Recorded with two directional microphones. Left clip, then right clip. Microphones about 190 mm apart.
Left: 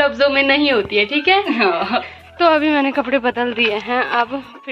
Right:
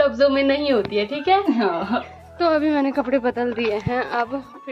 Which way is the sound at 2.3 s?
Centre (ahead or behind).